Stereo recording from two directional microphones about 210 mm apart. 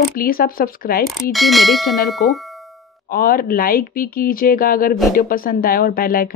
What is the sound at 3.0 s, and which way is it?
A woman's voice, 45° left (ahead or behind).